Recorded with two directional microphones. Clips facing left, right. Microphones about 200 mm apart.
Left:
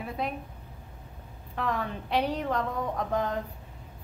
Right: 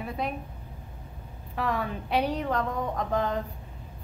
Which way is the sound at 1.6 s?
5° right (ahead or behind).